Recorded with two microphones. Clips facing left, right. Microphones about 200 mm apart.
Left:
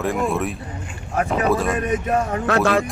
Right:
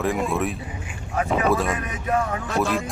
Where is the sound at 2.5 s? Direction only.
75° left (ahead or behind).